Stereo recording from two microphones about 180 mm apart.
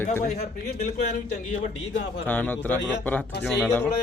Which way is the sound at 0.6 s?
45° left (ahead or behind).